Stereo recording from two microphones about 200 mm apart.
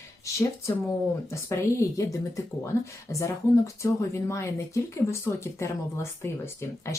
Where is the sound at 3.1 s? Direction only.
15° left (ahead or behind).